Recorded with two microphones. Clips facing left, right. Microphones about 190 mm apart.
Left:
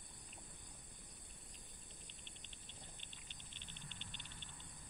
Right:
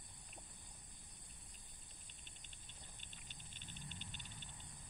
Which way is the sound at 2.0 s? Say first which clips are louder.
Left 4 dB; 40° right (ahead or behind).